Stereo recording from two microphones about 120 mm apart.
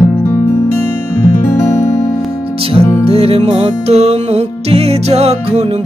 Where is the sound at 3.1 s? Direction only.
55° right (ahead or behind).